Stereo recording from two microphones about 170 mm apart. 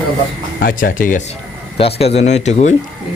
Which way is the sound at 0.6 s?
55° left (ahead or behind).